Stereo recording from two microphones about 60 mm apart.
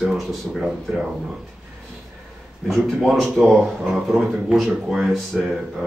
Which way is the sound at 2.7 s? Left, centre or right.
Centre.